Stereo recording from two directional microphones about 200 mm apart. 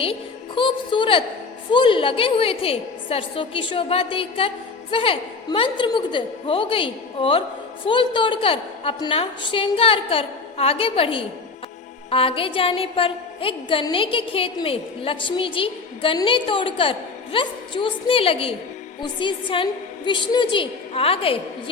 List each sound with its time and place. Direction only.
0.0 s a woman's voice: 25° left (ahead or behind)